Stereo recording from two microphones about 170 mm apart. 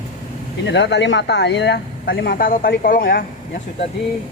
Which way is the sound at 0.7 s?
90° left.